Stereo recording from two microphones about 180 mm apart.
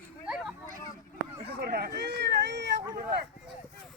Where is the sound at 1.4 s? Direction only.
60° right (ahead or behind); by 2.7 s 75° right (ahead or behind).